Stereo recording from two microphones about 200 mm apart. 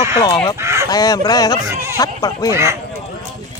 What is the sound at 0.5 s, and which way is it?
Fowl, 15° right (ahead or behind).